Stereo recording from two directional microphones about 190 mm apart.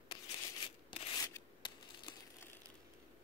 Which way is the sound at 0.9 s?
30° left (ahead or behind).